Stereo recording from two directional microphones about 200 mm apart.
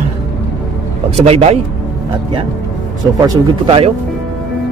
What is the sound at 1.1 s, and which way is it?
Speech, 30° right (ahead or behind).